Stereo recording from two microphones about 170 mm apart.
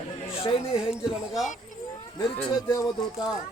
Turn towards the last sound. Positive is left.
turn(degrees=25)  # may be behind; listen again after turning